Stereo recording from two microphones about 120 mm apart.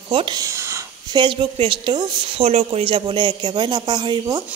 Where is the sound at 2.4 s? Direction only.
55° right (ahead or behind); by 4.4 s 35° right (ahead or behind).